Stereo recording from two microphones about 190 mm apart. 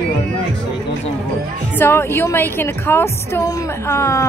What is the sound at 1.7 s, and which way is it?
A woman's voice, 10° left (ahead or behind).